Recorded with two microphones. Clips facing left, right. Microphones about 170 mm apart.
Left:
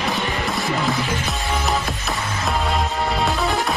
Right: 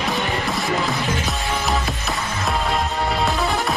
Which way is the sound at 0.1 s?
Centre (ahead or behind).